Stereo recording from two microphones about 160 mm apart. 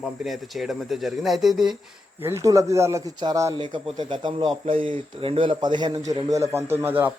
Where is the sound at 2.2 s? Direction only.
20° right (ahead or behind).